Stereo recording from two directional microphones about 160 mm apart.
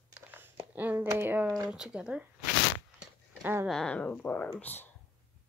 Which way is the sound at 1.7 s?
5° right (ahead or behind).